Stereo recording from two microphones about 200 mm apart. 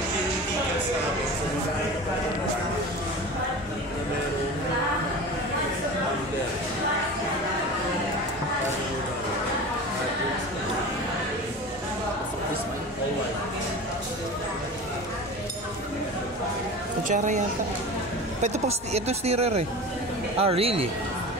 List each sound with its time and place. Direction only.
17.1 s a woman's voice: 40° right (ahead or behind)
18.4 s a woman's voice: 30° right (ahead or behind)